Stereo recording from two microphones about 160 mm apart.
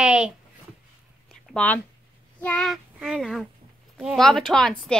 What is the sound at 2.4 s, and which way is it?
Child singing, 5° left (ahead or behind).